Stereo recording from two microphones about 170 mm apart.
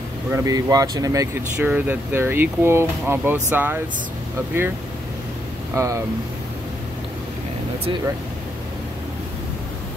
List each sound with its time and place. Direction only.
0.3 s speech: 20° right (ahead or behind)
5.8 s speech: 15° right (ahead or behind)